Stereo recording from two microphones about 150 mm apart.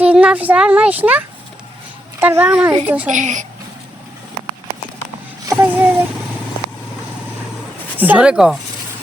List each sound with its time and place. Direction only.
0.0 s speech: 10° right (ahead or behind)
2.2 s a woman's voice: 10° right (ahead or behind)
3.1 s a woman's voice: 55° right (ahead or behind)
5.5 s a sound: 15° right (ahead or behind)
7.9 s speech: 10° right (ahead or behind)